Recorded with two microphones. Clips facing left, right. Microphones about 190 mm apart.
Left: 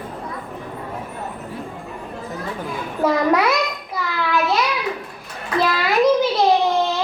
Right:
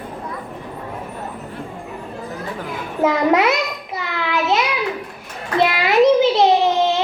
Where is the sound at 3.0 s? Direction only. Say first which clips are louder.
Right 2 dB; 20° right (ahead or behind).